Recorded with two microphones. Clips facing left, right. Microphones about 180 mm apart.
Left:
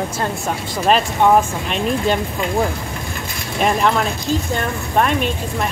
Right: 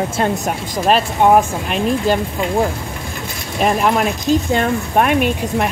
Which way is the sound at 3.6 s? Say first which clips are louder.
Right 2 dB; 5° right (ahead or behind).